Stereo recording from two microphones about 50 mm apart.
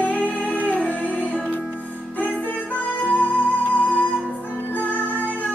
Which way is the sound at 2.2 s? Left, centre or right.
Left.